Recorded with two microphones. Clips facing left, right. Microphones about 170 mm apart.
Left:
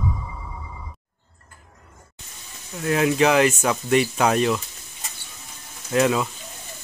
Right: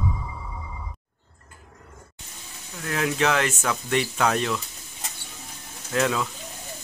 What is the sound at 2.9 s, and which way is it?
Speech, 10° left (ahead or behind).